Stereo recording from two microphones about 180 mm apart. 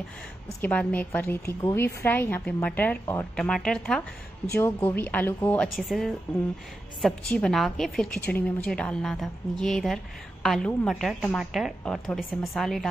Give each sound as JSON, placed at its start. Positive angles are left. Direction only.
{"t": 0.6, "sound": "a woman's voice", "side_deg": 10}
{"t": 5.8, "sound": "a woman's voice", "side_deg": 0}